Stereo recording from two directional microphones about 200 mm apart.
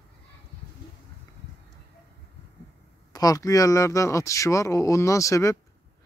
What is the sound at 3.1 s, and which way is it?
Speech, 20° left (ahead or behind).